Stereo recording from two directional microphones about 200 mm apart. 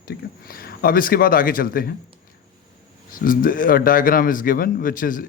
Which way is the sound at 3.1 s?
45° left (ahead or behind).